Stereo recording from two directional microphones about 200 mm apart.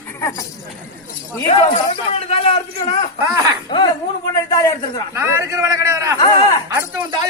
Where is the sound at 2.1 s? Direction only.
30° left (ahead or behind).